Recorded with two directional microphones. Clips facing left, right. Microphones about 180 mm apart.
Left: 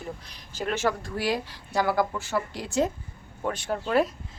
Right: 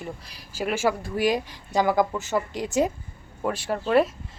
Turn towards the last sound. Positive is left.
turn(degrees=0)  # may be behind; listen again after turning